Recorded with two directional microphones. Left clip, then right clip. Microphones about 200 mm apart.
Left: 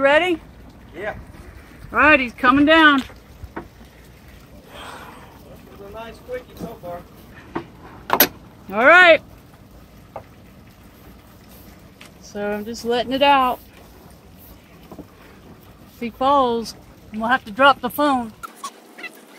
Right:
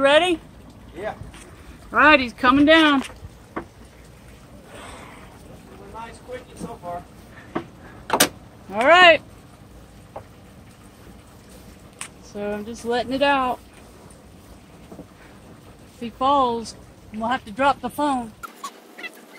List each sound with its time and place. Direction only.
0.0 s speech: centre (ahead or behind)
1.9 s speech: centre (ahead or behind)
8.7 s speech: 25° left (ahead or behind)
12.4 s speech: 15° left (ahead or behind)
16.0 s speech: 25° left (ahead or behind)
18.4 s dog: 5° left (ahead or behind)